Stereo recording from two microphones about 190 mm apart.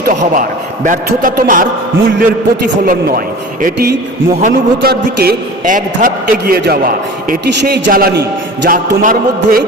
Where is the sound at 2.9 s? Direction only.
50° right (ahead or behind).